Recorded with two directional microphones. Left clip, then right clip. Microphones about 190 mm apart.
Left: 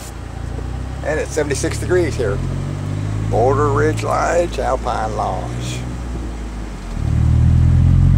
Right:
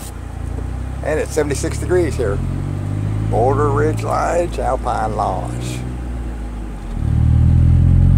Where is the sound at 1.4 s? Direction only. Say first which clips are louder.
Left 1 dB; 10° right (ahead or behind).